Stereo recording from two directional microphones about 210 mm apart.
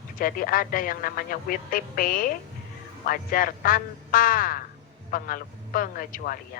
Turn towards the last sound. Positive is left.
turn(degrees=40)  # may be behind; listen again after turning